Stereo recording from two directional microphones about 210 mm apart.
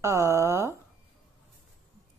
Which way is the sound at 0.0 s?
15° right (ahead or behind).